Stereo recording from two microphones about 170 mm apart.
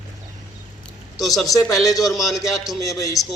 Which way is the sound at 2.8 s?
20° left (ahead or behind).